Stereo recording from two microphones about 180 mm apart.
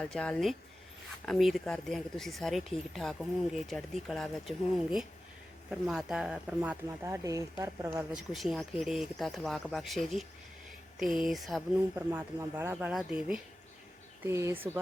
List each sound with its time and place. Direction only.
0.0 s speech: 5° left (ahead or behind); by 8.0 s 15° right (ahead or behind)
8.1 s speech: centre (ahead or behind)
11.9 s speech: 10° right (ahead or behind)